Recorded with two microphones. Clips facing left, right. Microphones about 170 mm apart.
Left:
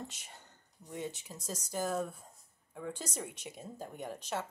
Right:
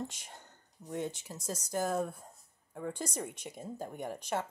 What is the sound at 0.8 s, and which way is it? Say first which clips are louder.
Speech: right 5 dB; 25° right (ahead or behind).